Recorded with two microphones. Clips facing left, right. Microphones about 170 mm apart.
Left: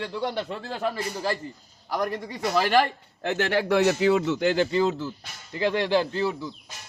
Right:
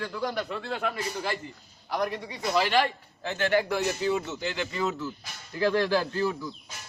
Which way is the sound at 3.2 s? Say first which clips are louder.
Left 1 dB; 70° left (ahead or behind).